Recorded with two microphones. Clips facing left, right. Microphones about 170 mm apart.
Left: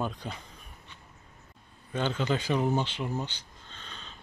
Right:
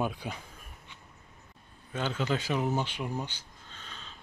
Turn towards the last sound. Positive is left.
turn(degrees=-5)  # may be behind; listen again after turning